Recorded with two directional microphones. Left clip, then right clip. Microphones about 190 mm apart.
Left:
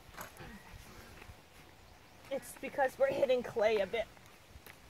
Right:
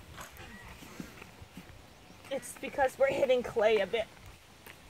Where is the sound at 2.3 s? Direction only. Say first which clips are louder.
Right 3 dB; 5° left (ahead or behind).